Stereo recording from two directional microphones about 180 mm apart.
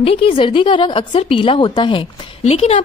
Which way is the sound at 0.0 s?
30° left (ahead or behind).